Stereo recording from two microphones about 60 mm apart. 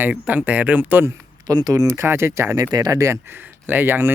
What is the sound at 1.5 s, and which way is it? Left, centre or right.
Speech, right.